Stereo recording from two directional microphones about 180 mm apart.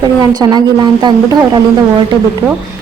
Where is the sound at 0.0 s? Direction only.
20° right (ahead or behind).